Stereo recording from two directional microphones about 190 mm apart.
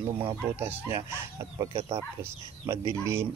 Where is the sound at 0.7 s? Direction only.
15° right (ahead or behind).